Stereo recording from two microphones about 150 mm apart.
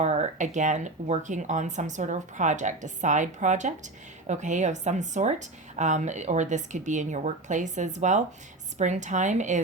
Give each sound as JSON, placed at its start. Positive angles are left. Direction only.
{"t": 0.0, "sound": "speech", "side_deg": -45}